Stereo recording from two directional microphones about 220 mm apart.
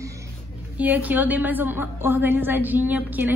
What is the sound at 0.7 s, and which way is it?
A woman's voice, 5° right (ahead or behind).